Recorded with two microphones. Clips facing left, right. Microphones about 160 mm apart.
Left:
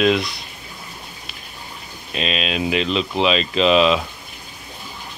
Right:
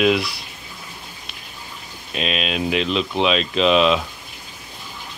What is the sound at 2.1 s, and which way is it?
Speech, centre (ahead or behind).